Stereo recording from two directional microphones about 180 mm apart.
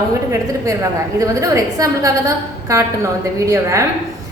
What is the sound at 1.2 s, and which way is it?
A woman's voice, 20° right (ahead or behind).